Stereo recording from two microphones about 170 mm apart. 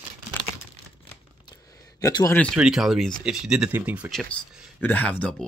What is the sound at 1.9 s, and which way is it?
Speech, 20° left (ahead or behind).